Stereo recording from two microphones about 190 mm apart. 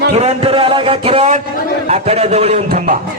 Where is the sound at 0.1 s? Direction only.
35° right (ahead or behind).